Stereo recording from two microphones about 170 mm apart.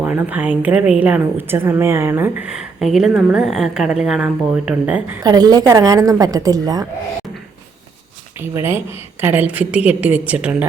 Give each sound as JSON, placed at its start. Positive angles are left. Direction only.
{"t": 0.0, "sound": "a woman's voice", "side_deg": -10}
{"t": 5.2, "sound": "a woman's voice", "side_deg": -25}
{"t": 8.4, "sound": "a woman's voice", "side_deg": -15}